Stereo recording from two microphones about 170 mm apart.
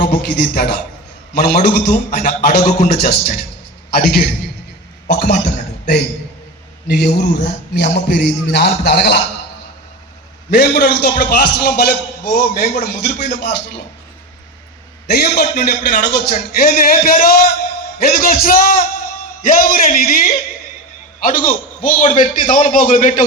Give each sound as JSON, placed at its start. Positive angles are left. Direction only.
{"t": 0.0, "sound": "a man's voice", "side_deg": 70}
{"t": 6.8, "sound": "speech", "side_deg": 75}
{"t": 10.5, "sound": "a man's voice", "side_deg": 70}
{"t": 15.0, "sound": "a man's voice", "side_deg": 65}